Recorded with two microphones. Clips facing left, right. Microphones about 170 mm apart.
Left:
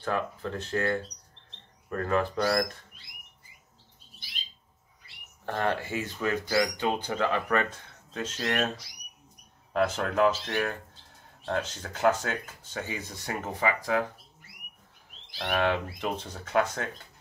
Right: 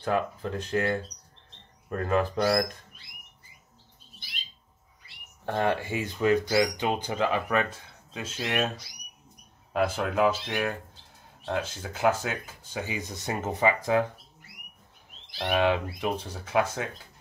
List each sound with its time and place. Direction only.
0.0 s speech: 15° right (ahead or behind)
5.4 s speech: 15° right (ahead or behind)
9.7 s speech: 10° right (ahead or behind)
15.4 s speech: 15° right (ahead or behind)